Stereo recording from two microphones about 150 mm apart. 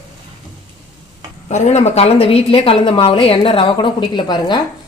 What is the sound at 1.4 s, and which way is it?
A woman's voice, 50° left (ahead or behind).